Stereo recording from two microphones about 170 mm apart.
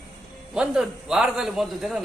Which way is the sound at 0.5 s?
5° right (ahead or behind).